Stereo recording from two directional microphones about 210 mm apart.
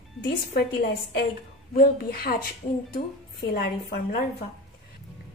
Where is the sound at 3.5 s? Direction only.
45° left (ahead or behind).